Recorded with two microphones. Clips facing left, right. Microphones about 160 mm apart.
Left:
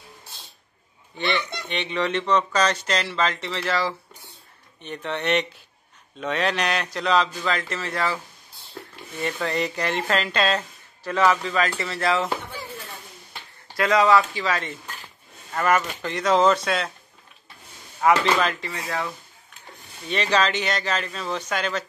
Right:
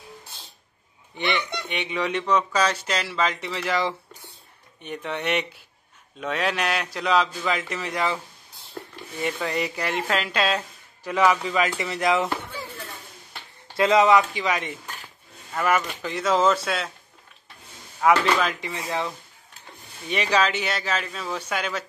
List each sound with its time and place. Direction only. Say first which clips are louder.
1.1 s speech: even; 15° right (ahead or behind)
9.2 s speech: left 1 dB; 10° right (ahead or behind)
13.7 s speech: right 1 dB; 25° right (ahead or behind)
15.5 s speech: left 1 dB; 5° right (ahead or behind)
18.0 s speech: even; 5° right (ahead or behind)
18.6 s speech: right 1 dB; 20° right (ahead or behind)